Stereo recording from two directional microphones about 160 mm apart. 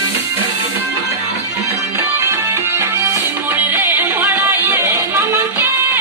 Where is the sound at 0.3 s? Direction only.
15° right (ahead or behind).